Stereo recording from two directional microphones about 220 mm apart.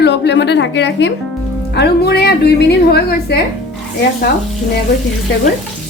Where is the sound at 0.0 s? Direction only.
50° left (ahead or behind).